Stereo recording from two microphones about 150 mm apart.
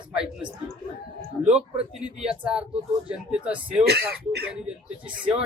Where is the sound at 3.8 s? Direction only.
90° right.